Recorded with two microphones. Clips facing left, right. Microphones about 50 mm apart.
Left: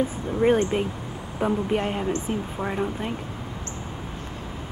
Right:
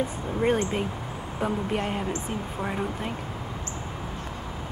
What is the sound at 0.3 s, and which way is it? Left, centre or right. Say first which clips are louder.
Speech: left 4 dB; centre.